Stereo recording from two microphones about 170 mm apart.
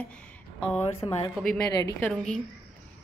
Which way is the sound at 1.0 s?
25° left (ahead or behind).